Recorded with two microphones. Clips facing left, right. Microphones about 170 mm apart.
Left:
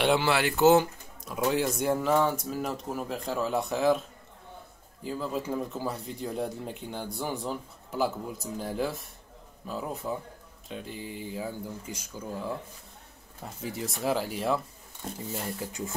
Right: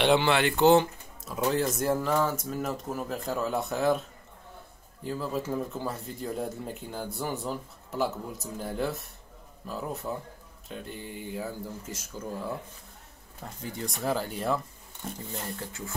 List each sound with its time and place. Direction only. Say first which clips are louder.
0.0 s speech: right 2 dB; 5° left (ahead or behind)
5.0 s speech: even; centre (ahead or behind)
15.4 s speech: left 3 dB; 15° left (ahead or behind)